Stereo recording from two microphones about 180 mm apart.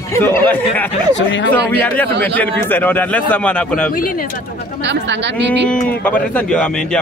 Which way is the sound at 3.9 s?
50° left (ahead or behind).